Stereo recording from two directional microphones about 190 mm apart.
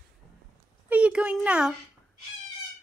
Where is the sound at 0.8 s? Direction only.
5° right (ahead or behind).